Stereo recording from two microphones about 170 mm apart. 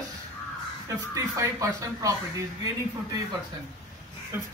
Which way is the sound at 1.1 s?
20° right (ahead or behind).